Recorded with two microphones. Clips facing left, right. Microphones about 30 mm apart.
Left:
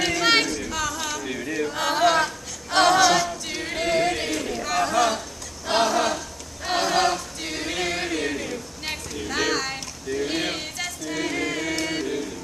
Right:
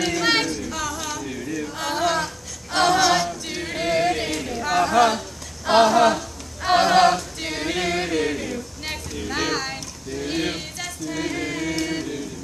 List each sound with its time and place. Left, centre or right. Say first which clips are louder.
0.0 s singing: even; centre
0.7 s music: even; centre
1.2 s chant: left 2 dB; left
1.8 s a sound: left 3 dB; centre
2.7 s singing: left 1 dB; centre
3.3 s choir: right 1 dB; centre
4.6 s a sound: right 4 dB; centre
5.7 s choir: right 6 dB; centre
10.1 s chant: even; centre